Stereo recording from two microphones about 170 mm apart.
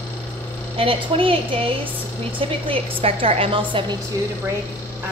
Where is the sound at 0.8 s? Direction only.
30° right (ahead or behind).